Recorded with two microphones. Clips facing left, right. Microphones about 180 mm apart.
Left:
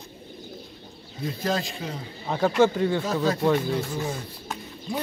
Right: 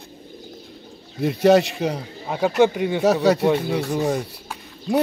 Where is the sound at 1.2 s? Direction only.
70° right (ahead or behind).